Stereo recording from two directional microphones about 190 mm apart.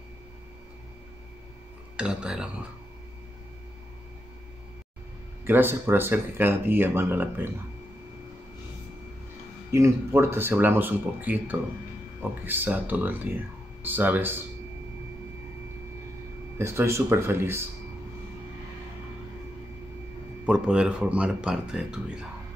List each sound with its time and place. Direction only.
2.0 s speech: 5° right (ahead or behind)
5.4 s speech: 10° right (ahead or behind)
9.7 s speech: 15° right (ahead or behind)
16.5 s speech: 15° right (ahead or behind)
20.4 s speech: 5° right (ahead or behind)